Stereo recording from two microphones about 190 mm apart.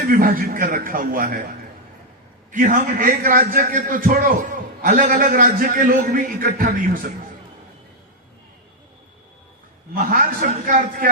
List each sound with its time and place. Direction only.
0.0 s a man's voice: 50° right (ahead or behind)
2.5 s a man's voice: 45° right (ahead or behind)
9.9 s a man's voice: 45° right (ahead or behind)